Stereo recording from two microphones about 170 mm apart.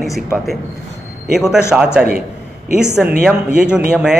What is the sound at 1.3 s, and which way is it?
Speech, 5° right (ahead or behind).